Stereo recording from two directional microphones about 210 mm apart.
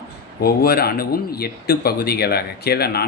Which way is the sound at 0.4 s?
50° left (ahead or behind).